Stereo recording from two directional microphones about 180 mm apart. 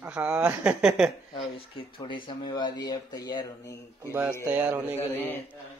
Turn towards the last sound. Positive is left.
turn(degrees=10)  # may be behind; listen again after turning